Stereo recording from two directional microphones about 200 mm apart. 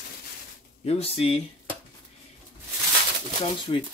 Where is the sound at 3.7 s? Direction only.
25° left (ahead or behind).